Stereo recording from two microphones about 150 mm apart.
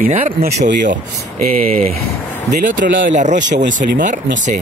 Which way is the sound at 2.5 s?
60° right (ahead or behind).